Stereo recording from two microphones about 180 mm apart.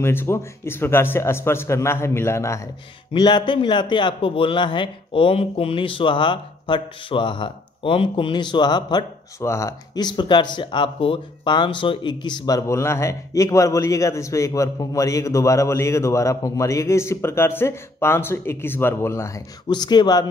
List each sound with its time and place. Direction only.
0.0 s a man's voice: 15° left (ahead or behind)